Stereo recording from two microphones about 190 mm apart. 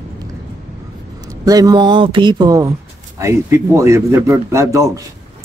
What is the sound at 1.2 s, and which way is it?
Speech, 20° right (ahead or behind).